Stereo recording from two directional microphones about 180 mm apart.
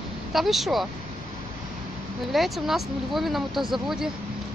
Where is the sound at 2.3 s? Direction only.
Centre (ahead or behind).